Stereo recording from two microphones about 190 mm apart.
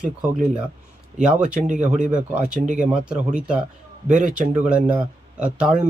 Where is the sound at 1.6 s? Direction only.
40° right (ahead or behind).